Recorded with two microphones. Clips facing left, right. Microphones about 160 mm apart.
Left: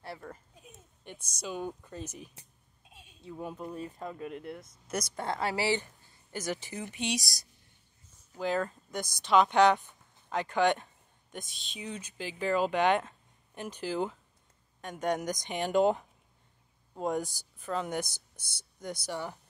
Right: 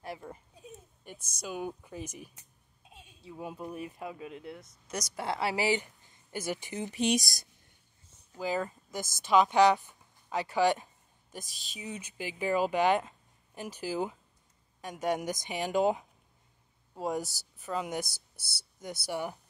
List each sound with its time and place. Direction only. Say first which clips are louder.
0.0 s a child's voice: right 1 dB; 15° right (ahead or behind)
1.0 s speech: left 1 dB; 5° right (ahead or behind)
6.9 s speech: right 6 dB; 45° right (ahead or behind)
8.4 s speech: left 1 dB; 5° right (ahead or behind)
18.3 s whispering: right 2 dB; 5° right (ahead or behind)
19.0 s speech: right 3 dB; 15° right (ahead or behind)